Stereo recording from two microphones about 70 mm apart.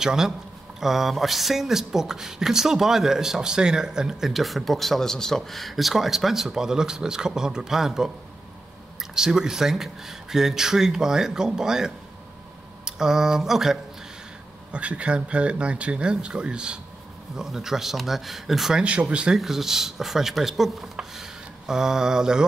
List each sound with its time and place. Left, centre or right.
0.0 s speech: centre
14.7 s speech: centre